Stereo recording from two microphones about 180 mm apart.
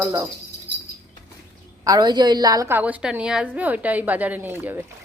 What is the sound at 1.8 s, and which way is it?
A woman's voice, 20° right (ahead or behind).